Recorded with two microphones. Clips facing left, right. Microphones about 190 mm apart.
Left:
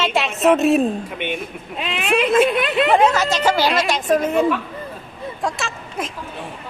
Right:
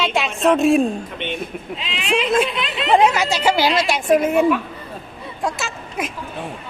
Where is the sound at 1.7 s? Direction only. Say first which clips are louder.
Left 3 dB; 55° left (ahead or behind).